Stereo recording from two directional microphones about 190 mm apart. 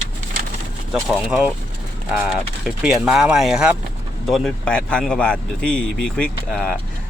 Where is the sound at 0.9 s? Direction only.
5° right (ahead or behind).